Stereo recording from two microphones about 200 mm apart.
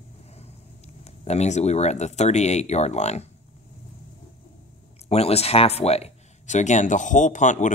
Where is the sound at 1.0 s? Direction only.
35° left (ahead or behind).